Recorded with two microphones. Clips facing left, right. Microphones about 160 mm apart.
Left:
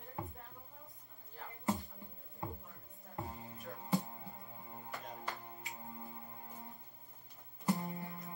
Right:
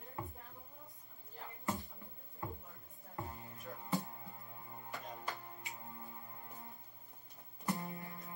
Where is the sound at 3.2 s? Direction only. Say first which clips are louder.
Left 2 dB; 20° left (ahead or behind).